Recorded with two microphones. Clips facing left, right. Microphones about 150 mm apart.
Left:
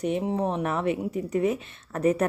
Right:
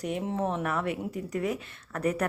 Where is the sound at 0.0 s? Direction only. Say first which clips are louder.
Left 4 dB; 20° left (ahead or behind).